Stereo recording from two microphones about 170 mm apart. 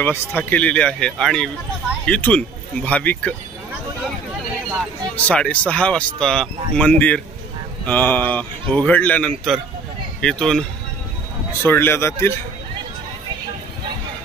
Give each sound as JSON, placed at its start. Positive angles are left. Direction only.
{"t": 0.0, "sound": "speech", "side_deg": 10}
{"t": 5.1, "sound": "speech", "side_deg": 5}
{"t": 11.6, "sound": "speech", "side_deg": 15}